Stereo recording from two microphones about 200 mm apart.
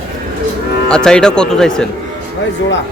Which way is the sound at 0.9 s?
5° left (ahead or behind).